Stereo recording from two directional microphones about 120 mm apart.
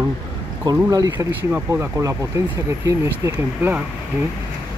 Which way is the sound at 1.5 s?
20° right (ahead or behind).